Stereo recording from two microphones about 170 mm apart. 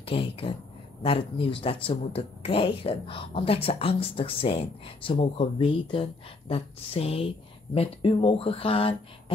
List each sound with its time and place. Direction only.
0.0 s speech: 30° left (ahead or behind)